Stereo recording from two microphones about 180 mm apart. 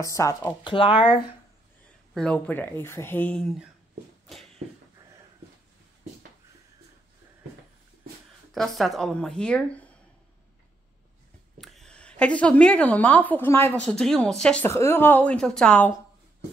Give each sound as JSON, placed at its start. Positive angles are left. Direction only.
{"t": 0.0, "sound": "a woman's voice", "side_deg": 15}
{"t": 0.7, "sound": "speech", "side_deg": 30}
{"t": 2.1, "sound": "a woman's voice", "side_deg": 5}
{"t": 8.5, "sound": "a woman's voice", "side_deg": 0}
{"t": 11.5, "sound": "a woman's voice", "side_deg": 0}